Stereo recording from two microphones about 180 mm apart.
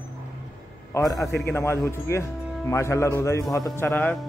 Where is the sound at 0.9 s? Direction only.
20° left (ahead or behind).